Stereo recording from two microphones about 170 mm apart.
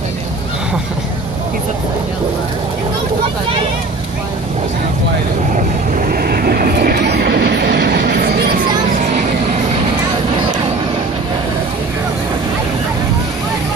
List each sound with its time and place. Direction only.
6.1 s train: 60° right (ahead or behind)